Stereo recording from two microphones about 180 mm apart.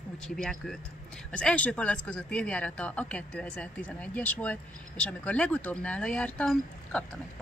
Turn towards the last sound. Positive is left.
turn(degrees=5)  # may be behind; listen again after turning